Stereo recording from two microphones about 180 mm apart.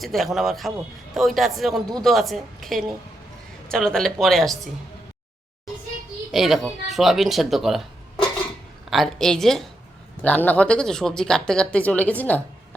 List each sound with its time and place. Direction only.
0.0 s speech: centre (ahead or behind)
6.3 s speech: centre (ahead or behind)